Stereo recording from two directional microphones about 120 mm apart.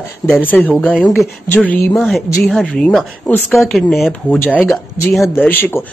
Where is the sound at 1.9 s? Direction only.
Centre (ahead or behind).